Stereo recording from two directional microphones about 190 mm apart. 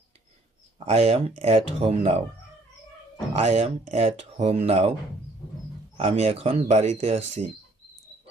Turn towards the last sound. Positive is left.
turn(degrees=-35)  # may be behind; listen again after turning